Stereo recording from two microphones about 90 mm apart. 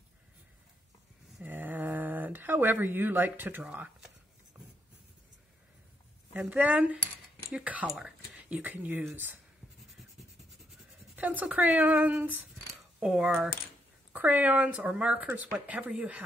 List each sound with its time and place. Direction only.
1.4 s a sound: 20° right (ahead or behind)
6.5 s speech: 15° right (ahead or behind)
11.1 s speech: 20° right (ahead or behind)
13.0 s speech: 5° right (ahead or behind)
14.1 s speech: 20° right (ahead or behind)